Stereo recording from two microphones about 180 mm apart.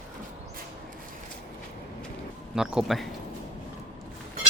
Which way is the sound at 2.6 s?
5° right (ahead or behind).